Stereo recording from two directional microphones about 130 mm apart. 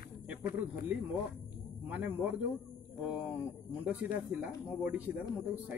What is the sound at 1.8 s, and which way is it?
Speech, 15° right (ahead or behind).